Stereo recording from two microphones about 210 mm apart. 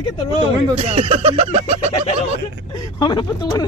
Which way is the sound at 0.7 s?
30° right (ahead or behind).